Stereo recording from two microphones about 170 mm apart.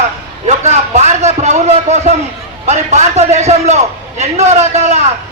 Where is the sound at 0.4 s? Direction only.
40° right (ahead or behind).